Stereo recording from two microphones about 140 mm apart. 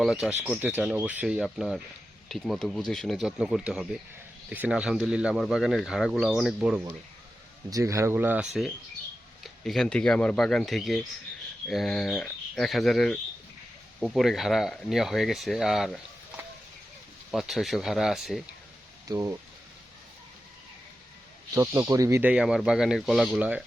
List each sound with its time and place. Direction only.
0.0 s speech: 5° right (ahead or behind)
7.7 s speech: 20° right (ahead or behind)
9.4 s speech: centre (ahead or behind)
17.3 s speech: centre (ahead or behind)
19.0 s speech: 25° right (ahead or behind)
21.5 s speech: 25° right (ahead or behind)
22.2 s speech: 10° right (ahead or behind)